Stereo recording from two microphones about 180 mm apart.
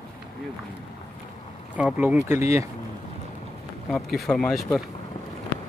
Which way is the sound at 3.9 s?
Centre (ahead or behind).